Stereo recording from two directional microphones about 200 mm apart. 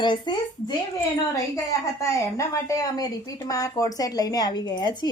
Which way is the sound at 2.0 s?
15° left (ahead or behind).